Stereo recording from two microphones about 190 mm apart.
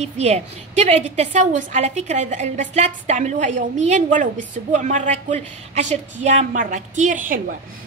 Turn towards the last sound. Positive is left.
turn(degrees=-45)  # may be behind; listen again after turning